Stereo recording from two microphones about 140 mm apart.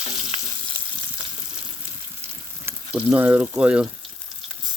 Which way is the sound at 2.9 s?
10° right (ahead or behind).